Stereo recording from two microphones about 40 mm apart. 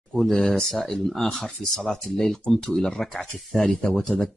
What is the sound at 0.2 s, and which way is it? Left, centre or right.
Speech, centre.